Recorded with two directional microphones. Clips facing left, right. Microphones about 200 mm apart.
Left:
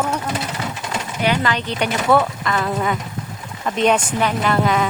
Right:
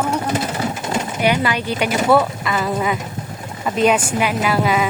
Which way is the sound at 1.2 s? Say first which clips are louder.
Right 1 dB; 10° right (ahead or behind).